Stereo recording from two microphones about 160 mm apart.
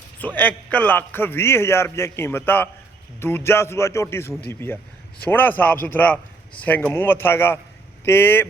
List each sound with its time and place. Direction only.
0.2 s a man's voice: 10° left (ahead or behind)